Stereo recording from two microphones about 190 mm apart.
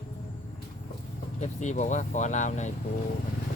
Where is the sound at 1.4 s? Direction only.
40° left (ahead or behind).